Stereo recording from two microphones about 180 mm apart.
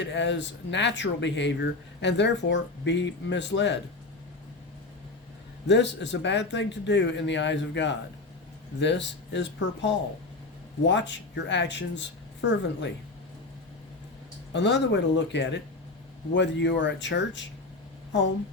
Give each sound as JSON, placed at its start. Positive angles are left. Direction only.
{"t": 0.0, "sound": "speech", "side_deg": 80}
{"t": 5.6, "sound": "speech", "side_deg": 75}
{"t": 14.5, "sound": "speech", "side_deg": 75}